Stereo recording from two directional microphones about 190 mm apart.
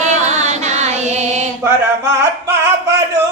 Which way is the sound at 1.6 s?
15° right (ahead or behind).